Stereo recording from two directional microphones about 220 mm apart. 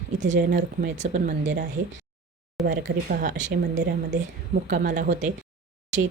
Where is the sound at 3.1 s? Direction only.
35° right (ahead or behind).